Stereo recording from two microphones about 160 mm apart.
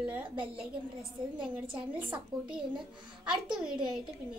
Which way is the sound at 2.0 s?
10° right (ahead or behind).